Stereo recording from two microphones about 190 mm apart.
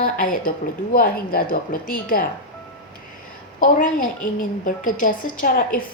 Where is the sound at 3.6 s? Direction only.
45° left (ahead or behind).